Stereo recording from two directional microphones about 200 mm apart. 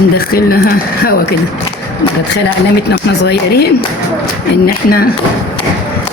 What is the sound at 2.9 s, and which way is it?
Speech, 55° left (ahead or behind).